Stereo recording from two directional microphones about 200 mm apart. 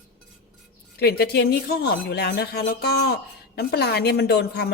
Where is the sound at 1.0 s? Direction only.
55° left (ahead or behind).